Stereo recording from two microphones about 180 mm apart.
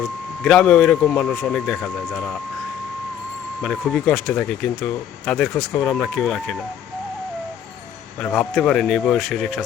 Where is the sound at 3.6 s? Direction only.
Centre (ahead or behind).